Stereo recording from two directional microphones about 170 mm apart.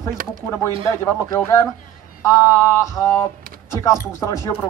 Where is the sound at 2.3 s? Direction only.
15° left (ahead or behind).